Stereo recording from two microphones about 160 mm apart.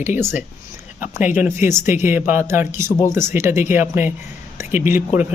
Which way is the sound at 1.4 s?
15° right (ahead or behind).